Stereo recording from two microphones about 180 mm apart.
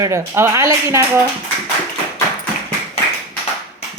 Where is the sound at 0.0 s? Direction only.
15° right (ahead or behind).